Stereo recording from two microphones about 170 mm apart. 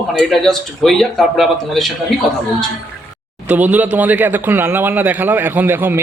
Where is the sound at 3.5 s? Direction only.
10° right (ahead or behind).